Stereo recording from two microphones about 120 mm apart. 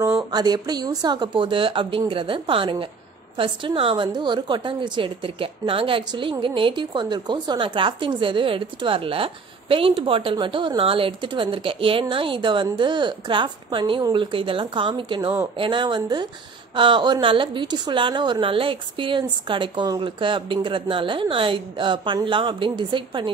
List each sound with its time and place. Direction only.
0.3 s a woman's voice: 35° right (ahead or behind)